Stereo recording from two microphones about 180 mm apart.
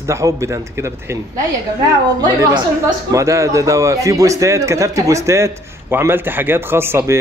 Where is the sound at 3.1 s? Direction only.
15° right (ahead or behind).